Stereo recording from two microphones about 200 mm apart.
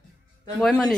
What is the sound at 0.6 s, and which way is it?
Speech, 5° left (ahead or behind).